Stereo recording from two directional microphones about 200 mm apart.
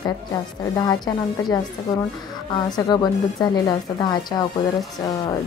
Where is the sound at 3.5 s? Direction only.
20° left (ahead or behind).